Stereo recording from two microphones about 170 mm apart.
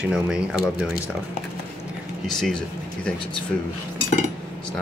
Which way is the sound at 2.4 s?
5° left (ahead or behind).